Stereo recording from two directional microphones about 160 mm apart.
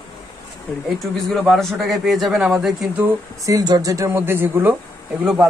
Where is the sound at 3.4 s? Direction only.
25° right (ahead or behind).